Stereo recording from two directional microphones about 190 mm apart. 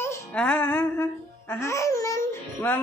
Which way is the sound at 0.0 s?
10° left (ahead or behind).